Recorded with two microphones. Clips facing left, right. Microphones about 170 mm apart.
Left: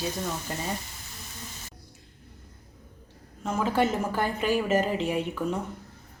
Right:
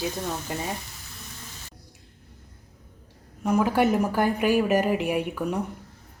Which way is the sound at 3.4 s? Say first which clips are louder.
Right 4 dB; 10° right (ahead or behind).